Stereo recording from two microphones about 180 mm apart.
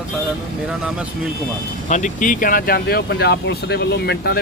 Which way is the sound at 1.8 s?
40° left (ahead or behind).